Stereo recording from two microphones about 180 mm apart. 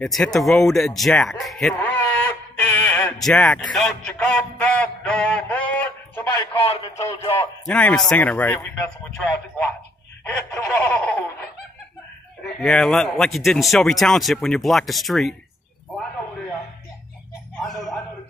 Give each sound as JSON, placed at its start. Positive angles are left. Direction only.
{"t": 0.0, "sound": "speech", "side_deg": 0}
{"t": 6.1, "sound": "radio", "side_deg": 30}
{"t": 7.1, "sound": "a man's voice", "side_deg": 35}
{"t": 7.6, "sound": "snicker", "side_deg": 5}
{"t": 8.7, "sound": "speech", "side_deg": 5}
{"t": 10.2, "sound": "snicker", "side_deg": 5}
{"t": 12.5, "sound": "speech", "side_deg": 5}
{"t": 17.6, "sound": "a sound", "side_deg": 0}